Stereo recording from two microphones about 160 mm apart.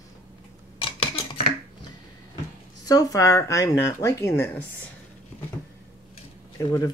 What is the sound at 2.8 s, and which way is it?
Speech, 20° left (ahead or behind).